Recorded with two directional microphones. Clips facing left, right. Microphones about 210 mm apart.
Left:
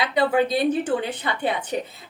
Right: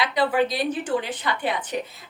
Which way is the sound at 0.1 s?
25° left (ahead or behind).